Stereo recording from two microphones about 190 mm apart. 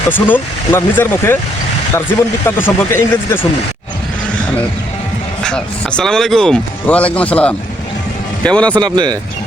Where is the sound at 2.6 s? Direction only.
10° left (ahead or behind).